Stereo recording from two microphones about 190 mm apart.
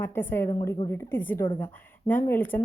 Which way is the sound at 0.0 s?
10° left (ahead or behind).